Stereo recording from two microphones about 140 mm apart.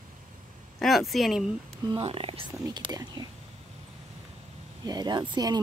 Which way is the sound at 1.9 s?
40° right (ahead or behind).